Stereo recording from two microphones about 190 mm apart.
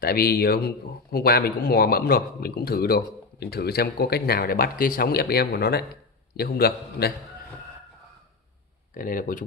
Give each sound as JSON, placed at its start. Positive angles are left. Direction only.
{"t": 0.0, "sound": "a man's voice", "side_deg": 55}
{"t": 8.9, "sound": "speech", "side_deg": 45}